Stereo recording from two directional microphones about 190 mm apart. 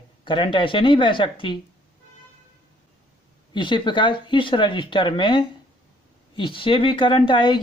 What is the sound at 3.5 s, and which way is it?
Speech, 25° left (ahead or behind).